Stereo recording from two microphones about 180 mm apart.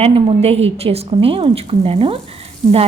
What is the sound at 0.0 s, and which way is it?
A woman's voice, 30° right (ahead or behind).